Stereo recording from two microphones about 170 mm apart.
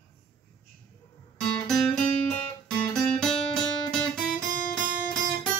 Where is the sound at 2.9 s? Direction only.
5° left (ahead or behind).